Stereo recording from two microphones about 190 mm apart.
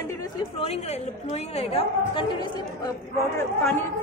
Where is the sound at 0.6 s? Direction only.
35° left (ahead or behind).